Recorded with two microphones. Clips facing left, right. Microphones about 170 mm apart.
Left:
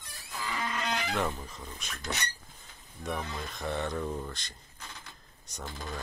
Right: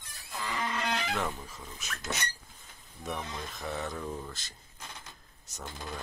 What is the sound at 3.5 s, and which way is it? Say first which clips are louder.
Speech: left 4 dB; centre (ahead or behind).